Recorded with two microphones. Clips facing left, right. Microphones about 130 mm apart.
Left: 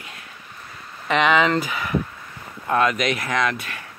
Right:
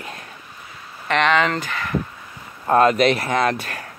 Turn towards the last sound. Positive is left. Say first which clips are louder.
# right 3 dB
turn(degrees=-40)  # may be behind; listen again after turning